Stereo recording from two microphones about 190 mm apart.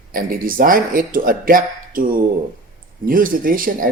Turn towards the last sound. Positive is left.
turn(degrees=-50)  # may be behind; listen again after turning